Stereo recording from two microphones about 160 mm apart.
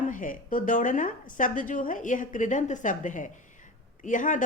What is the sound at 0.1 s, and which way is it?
A woman's voice, 55° left (ahead or behind).